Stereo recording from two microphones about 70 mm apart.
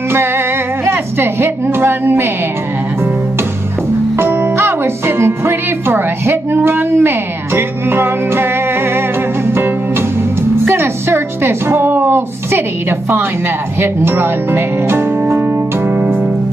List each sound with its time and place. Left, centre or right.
0.8 s a woman's voice: right
4.2 s music: right
10.7 s a woman's voice: right
13.7 s speech: right